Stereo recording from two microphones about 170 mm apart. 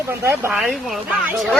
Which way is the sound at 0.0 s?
15° right (ahead or behind).